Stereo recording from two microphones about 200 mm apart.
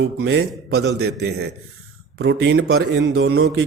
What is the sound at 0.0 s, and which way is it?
A man's voice, 55° right (ahead or behind).